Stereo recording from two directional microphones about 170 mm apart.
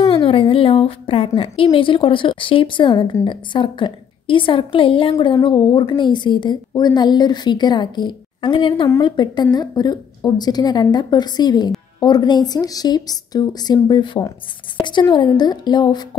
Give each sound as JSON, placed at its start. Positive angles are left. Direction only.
{"t": 0.0, "sound": "a woman's voice", "side_deg": 30}